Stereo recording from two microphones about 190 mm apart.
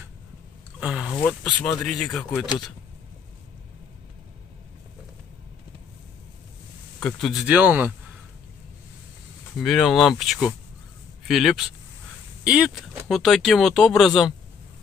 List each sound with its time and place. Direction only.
0.7 s speech: 5° right (ahead or behind)
1.2 s speech: 5° left (ahead or behind)
7.0 s speech: 5° left (ahead or behind)
9.6 s speech: centre (ahead or behind)